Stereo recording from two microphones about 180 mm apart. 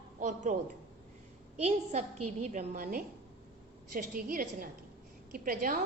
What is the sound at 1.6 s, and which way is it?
Speech, 35° right (ahead or behind).